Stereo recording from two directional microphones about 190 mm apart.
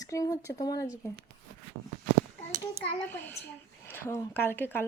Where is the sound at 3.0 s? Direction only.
10° left (ahead or behind).